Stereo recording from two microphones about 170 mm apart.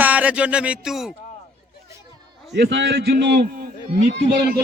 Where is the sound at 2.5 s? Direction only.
90° right; by 3.6 s 75° right (ahead or behind).